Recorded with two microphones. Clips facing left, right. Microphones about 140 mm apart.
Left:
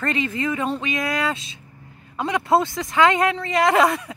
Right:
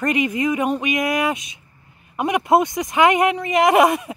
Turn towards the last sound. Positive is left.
turn(degrees=-20)  # may be behind; listen again after turning